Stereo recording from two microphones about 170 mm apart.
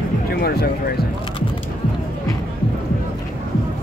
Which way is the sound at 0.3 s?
65° left (ahead or behind).